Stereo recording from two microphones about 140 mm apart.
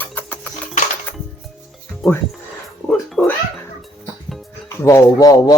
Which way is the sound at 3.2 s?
15° left (ahead or behind).